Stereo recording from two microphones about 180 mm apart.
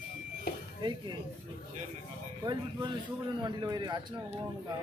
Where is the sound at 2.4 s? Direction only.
25° right (ahead or behind).